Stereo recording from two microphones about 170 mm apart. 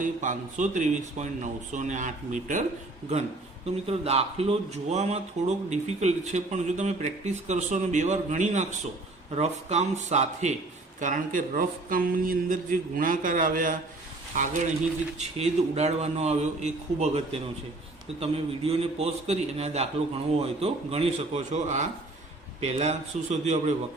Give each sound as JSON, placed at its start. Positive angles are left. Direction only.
{"t": 0.0, "sound": "speech", "side_deg": -45}
{"t": 3.8, "sound": "a man's voice", "side_deg": -35}